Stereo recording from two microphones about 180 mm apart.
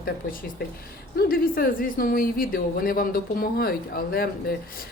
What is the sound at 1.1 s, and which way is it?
Speech, 55° left (ahead or behind).